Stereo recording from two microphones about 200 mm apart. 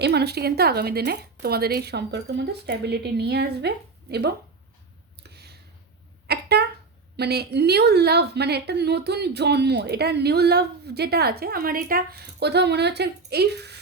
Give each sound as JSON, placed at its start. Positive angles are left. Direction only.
{"t": 0.0, "sound": "a woman's voice", "side_deg": -55}
{"t": 5.2, "sound": "a sound", "side_deg": -55}
{"t": 7.2, "sound": "a woman's voice", "side_deg": -55}